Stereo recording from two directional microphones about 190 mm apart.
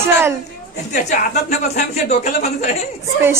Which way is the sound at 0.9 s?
45° left (ahead or behind).